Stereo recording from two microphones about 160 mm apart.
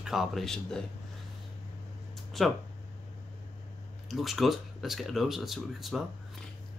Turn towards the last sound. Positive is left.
turn(degrees=0)  # may be behind; listen again after turning